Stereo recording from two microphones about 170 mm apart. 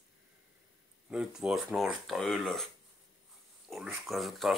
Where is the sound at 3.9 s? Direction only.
Centre (ahead or behind).